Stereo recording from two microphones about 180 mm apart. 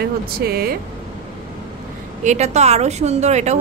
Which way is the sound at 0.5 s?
55° right (ahead or behind).